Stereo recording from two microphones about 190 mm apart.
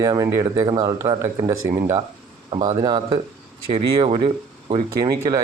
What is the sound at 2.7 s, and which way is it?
Speech, 20° right (ahead or behind).